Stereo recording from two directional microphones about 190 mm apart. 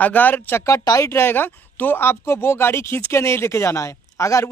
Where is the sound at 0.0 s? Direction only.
10° left (ahead or behind).